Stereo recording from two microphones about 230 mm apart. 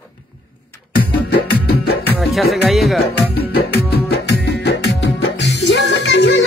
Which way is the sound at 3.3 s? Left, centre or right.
Left.